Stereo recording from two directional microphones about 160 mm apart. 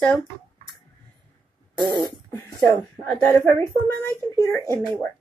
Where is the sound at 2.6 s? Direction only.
5° left (ahead or behind).